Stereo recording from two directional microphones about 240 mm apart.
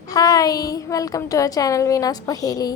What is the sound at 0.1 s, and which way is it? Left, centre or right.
A woman's voice, centre.